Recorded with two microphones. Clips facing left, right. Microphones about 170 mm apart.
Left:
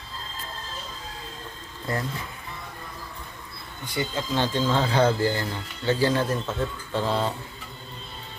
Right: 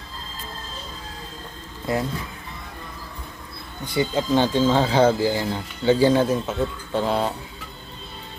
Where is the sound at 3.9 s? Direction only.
25° right (ahead or behind).